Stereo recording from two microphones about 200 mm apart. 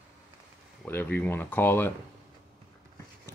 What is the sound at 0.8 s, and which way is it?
Speech, 10° left (ahead or behind).